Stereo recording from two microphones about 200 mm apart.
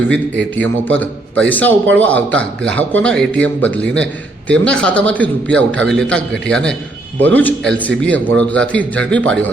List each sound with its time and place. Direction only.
0.1 s a man's voice: 10° left (ahead or behind)